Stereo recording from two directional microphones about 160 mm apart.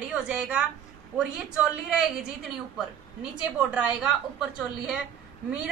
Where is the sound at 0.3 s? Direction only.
5° right (ahead or behind).